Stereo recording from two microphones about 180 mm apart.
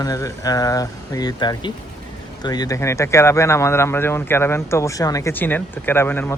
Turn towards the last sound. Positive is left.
turn(degrees=10)  # may be behind; listen again after turning